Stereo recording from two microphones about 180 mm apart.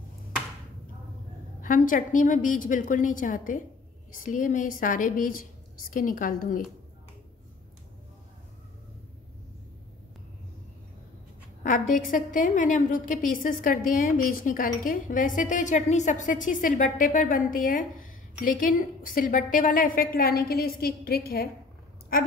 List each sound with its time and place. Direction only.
1.6 s a woman's voice: 50° left (ahead or behind)
11.6 s a woman's voice: 45° left (ahead or behind)